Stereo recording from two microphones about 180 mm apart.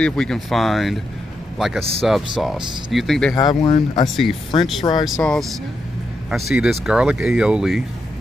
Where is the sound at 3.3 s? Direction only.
25° left (ahead or behind).